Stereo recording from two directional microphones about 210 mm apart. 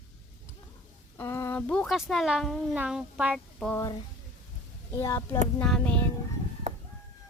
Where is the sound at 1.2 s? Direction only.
10° left (ahead or behind).